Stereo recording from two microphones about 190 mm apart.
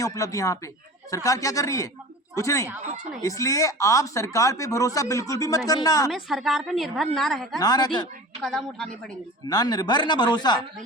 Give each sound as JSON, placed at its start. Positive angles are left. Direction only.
{"t": 0.0, "sound": "speech", "side_deg": 15}
{"t": 6.1, "sound": "a woman's voice", "side_deg": 0}
{"t": 7.6, "sound": "speech", "side_deg": 20}
{"t": 8.4, "sound": "a woman's voice", "side_deg": 0}
{"t": 9.5, "sound": "speech", "side_deg": 20}